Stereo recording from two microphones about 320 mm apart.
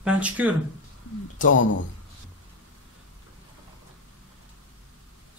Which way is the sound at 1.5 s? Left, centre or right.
Left.